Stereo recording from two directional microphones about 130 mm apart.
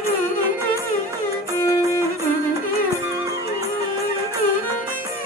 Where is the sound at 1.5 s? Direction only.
20° left (ahead or behind).